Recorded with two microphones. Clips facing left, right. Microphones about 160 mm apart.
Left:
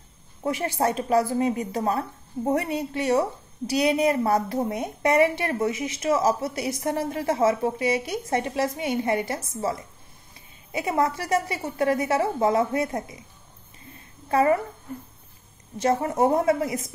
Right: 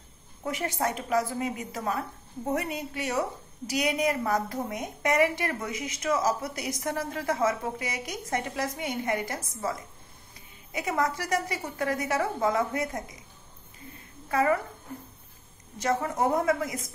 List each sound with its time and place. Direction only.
0.4 s a woman's voice: 30° left (ahead or behind)
14.3 s a woman's voice: 30° left (ahead or behind)
15.8 s a woman's voice: 30° left (ahead or behind)